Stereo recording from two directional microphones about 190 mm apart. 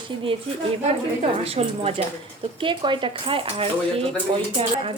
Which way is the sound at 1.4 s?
30° right (ahead or behind).